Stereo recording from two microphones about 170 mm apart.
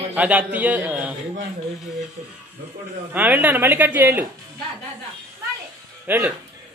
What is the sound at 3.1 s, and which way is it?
Speech, 10° right (ahead or behind).